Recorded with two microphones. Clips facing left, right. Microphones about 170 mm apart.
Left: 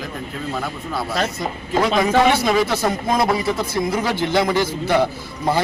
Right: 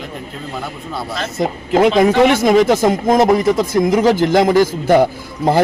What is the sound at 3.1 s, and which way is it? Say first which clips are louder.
Speech: right 7 dB; 45° right (ahead or behind).